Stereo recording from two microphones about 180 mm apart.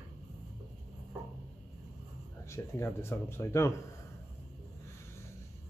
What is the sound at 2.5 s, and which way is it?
Speech, 15° left (ahead or behind).